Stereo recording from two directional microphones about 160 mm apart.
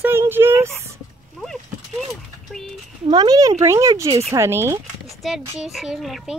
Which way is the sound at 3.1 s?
25° right (ahead or behind).